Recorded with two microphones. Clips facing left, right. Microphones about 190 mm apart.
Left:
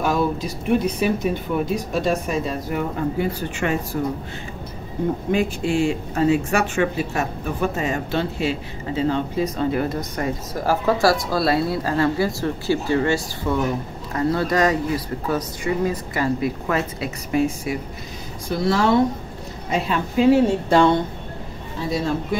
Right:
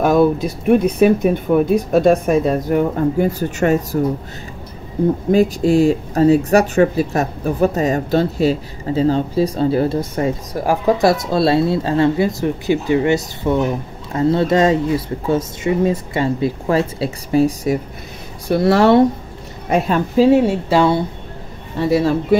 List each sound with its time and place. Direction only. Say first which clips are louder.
0.0 s speech: right 8 dB; 55° right (ahead or behind)
5.3 s speech: right 8 dB; 40° right (ahead or behind)
10.5 s speech: right 2 dB; 15° right (ahead or behind); by 17.7 s 35° right (ahead or behind)
18.5 s a man's voice: right 7 dB; 65° right (ahead or behind)
20.2 s speech: right 3 dB; 25° right (ahead or behind)
20.4 s a woman's voice: right 2 dB; 5° right (ahead or behind)
21.7 s a man's voice: right 8 dB; 65° right (ahead or behind)